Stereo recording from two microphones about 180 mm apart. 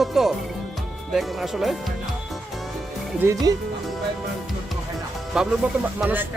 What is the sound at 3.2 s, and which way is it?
Speech, 20° right (ahead or behind).